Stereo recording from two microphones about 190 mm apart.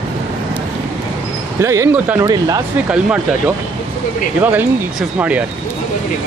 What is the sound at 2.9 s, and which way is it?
Speech, 5° right (ahead or behind).